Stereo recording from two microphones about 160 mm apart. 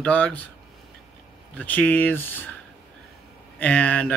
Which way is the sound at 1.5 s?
10° left (ahead or behind).